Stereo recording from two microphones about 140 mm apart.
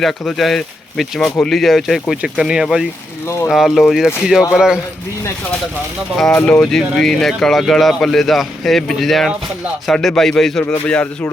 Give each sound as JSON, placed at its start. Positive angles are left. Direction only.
{"t": 0.0, "sound": "speech", "side_deg": 0}
{"t": 3.2, "sound": "speech", "side_deg": 20}
{"t": 3.5, "sound": "speech", "side_deg": 0}
{"t": 6.1, "sound": "speech", "side_deg": 5}